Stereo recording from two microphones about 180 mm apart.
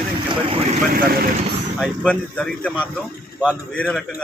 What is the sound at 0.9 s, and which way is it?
Speech, 55° right (ahead or behind).